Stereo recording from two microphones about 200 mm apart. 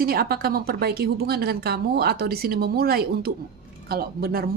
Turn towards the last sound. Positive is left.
turn(degrees=-50)  # may be behind; listen again after turning